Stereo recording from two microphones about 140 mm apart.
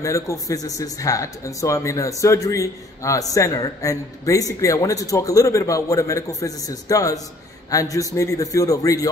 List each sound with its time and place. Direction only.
0.0 s a man's voice: 20° left (ahead or behind)